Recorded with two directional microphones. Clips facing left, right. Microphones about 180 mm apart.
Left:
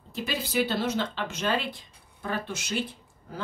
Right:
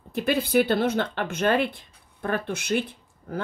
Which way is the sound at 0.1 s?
55° right (ahead or behind).